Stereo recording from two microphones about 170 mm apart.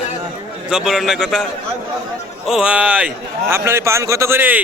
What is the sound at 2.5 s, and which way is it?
A man's voice, 5° right (ahead or behind).